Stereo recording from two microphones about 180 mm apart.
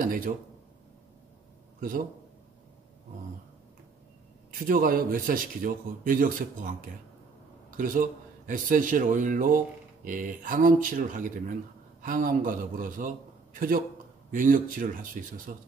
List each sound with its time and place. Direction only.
0.0 s a sound: 50° right (ahead or behind)
1.8 s a man's voice: 50° right (ahead or behind)
4.5 s a man's voice: 55° right (ahead or behind)
7.7 s a man's voice: 50° right (ahead or behind)